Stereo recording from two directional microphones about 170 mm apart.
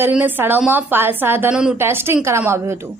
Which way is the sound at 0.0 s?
10° right (ahead or behind).